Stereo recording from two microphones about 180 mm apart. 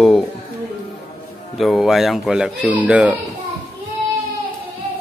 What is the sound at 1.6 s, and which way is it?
Speech, centre (ahead or behind).